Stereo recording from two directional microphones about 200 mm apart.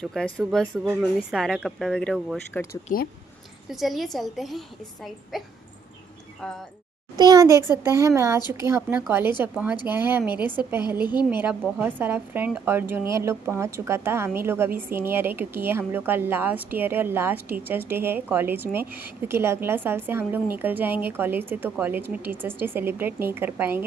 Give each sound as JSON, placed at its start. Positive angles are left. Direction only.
{"t": 0.0, "sound": "a woman's voice", "side_deg": 0}
{"t": 2.7, "sound": "speech", "side_deg": 50}
{"t": 3.7, "sound": "a woman's voice", "side_deg": 0}
{"t": 7.2, "sound": "a woman's voice", "side_deg": -20}